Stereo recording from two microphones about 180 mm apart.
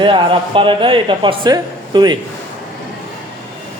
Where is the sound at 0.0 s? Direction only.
30° right (ahead or behind).